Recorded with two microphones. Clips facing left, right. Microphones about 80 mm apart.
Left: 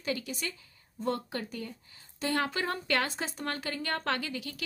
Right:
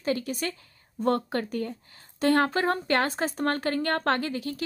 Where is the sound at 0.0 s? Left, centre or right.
Right.